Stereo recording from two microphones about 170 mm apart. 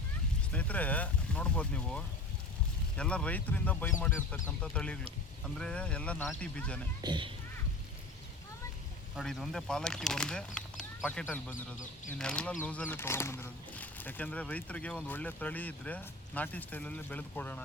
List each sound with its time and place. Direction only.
0.5 s speech: 10° left (ahead or behind)
7.0 s speech: 30° right (ahead or behind)
9.1 s speech: centre (ahead or behind)
11.5 s speech: 50° left (ahead or behind)
12.2 s speech: 5° left (ahead or behind)